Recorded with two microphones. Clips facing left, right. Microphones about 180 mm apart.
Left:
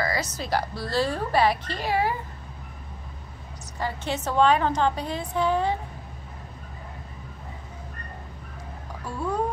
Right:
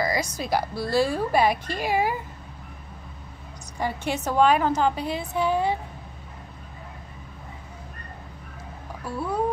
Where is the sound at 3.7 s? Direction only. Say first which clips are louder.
Right 2 dB; 10° right (ahead or behind).